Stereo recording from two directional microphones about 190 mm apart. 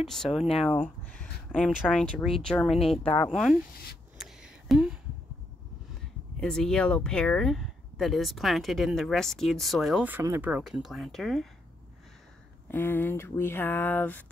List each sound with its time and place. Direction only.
0.0 s speech: centre (ahead or behind)
4.2 s a sound: 5° right (ahead or behind)
6.4 s speech: 5° left (ahead or behind)
12.6 s speech: 10° left (ahead or behind)